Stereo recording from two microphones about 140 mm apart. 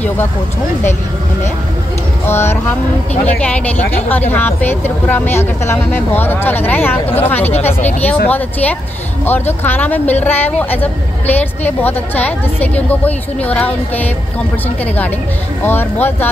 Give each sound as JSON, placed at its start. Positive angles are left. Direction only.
{"t": 2.2, "sound": "speech", "side_deg": 15}
{"t": 9.2, "sound": "speech", "side_deg": 15}
{"t": 15.6, "sound": "speech", "side_deg": 15}